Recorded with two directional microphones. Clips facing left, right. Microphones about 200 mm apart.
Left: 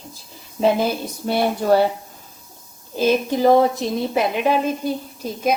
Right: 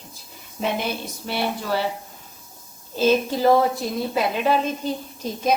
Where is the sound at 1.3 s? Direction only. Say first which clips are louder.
Left 8 dB; 50° left (ahead or behind).